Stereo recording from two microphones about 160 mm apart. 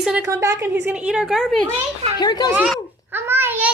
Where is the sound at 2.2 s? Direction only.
25° left (ahead or behind).